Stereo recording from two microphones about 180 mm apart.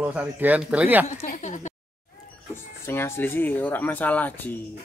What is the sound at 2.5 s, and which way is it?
Speech, 15° left (ahead or behind).